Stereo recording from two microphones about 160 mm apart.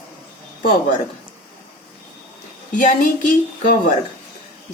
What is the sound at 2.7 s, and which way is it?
Speech, 55° left (ahead or behind).